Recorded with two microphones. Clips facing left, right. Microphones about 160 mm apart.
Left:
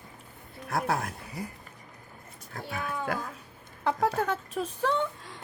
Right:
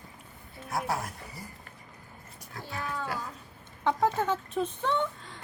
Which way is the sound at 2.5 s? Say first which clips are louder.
Left 3 dB; 50° left (ahead or behind).